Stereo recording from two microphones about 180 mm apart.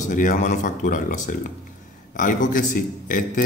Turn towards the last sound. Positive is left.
turn(degrees=50)  # may be behind; listen again after turning